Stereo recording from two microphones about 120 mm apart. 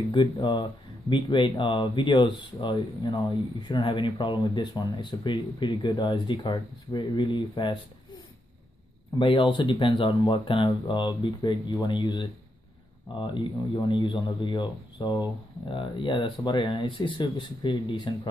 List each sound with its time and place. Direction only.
0.1 s speech: 40° left (ahead or behind)
9.2 s speech: 45° left (ahead or behind)